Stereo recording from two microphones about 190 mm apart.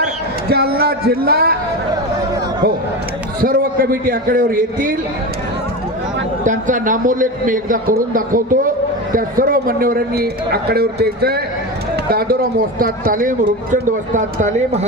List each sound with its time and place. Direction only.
0.5 s a man's voice: 55° right (ahead or behind)
3.4 s a man's voice: 50° right (ahead or behind)
6.4 s a man's voice: 40° right (ahead or behind)